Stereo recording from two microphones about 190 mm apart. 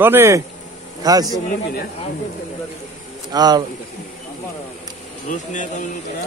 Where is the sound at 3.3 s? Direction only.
20° right (ahead or behind).